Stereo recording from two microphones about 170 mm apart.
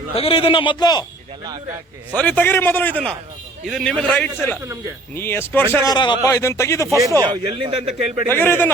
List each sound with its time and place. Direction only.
0.2 s a man's voice: 35° left (ahead or behind)
2.1 s a man's voice: 10° left (ahead or behind)
6.8 s speech: 20° right (ahead or behind)
7.2 s speech: 30° right (ahead or behind)
8.3 s a man's voice: 10° left (ahead or behind)